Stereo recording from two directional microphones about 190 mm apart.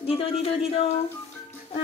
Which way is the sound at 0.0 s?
30° left (ahead or behind).